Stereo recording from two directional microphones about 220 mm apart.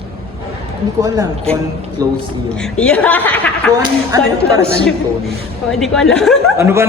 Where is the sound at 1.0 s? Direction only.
15° right (ahead or behind).